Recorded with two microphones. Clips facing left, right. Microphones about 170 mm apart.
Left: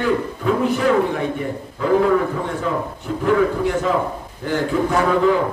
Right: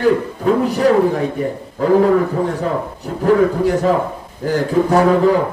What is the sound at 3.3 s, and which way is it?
A man's voice, 40° right (ahead or behind).